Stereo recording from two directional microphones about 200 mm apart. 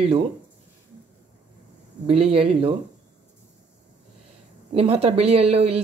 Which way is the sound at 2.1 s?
30° right (ahead or behind).